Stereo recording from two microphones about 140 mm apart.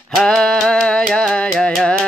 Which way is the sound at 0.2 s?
5° left (ahead or behind).